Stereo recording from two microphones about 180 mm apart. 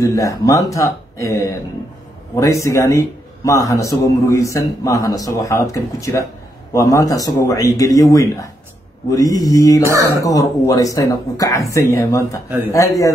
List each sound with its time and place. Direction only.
0.0 s a man's voice: 20° left (ahead or behind)
9.8 s speech: 15° right (ahead or behind)
10.2 s a man's voice: 20° left (ahead or behind)
12.4 s speech: 15° right (ahead or behind)